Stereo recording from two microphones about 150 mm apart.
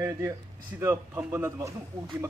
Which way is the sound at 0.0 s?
20° right (ahead or behind).